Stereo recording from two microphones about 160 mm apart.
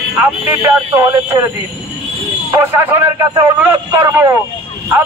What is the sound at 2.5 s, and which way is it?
Speech, 15° right (ahead or behind).